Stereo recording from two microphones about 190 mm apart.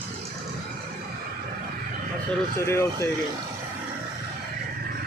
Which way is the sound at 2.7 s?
15° left (ahead or behind).